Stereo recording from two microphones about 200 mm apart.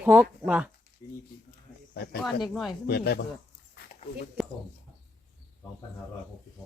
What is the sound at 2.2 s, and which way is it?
Speech, centre (ahead or behind).